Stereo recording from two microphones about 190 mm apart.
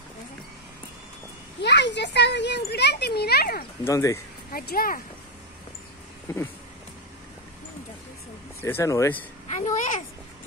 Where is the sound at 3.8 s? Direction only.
15° left (ahead or behind).